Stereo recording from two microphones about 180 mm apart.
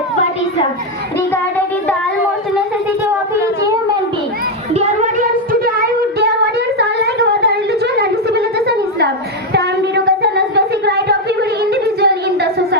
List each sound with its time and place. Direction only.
1.3 s child singing: 10° left (ahead or behind)
4.7 s child singing: 40° right (ahead or behind); by 5.7 s 55° right (ahead or behind)
6.1 s a sound: 65° right (ahead or behind)